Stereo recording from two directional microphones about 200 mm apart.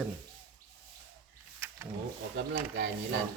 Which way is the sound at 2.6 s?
50° right (ahead or behind).